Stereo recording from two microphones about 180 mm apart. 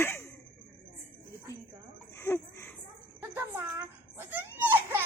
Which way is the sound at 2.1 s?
15° left (ahead or behind).